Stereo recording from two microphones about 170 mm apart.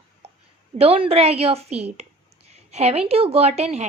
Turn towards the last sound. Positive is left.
turn(degrees=-40)  # may be behind; listen again after turning